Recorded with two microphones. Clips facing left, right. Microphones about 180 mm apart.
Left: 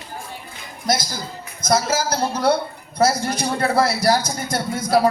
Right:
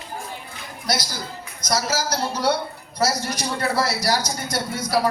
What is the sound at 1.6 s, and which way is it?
A man's voice, 50° left (ahead or behind).